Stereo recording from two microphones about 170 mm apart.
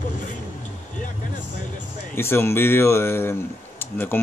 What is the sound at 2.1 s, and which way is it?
Speech, 15° left (ahead or behind).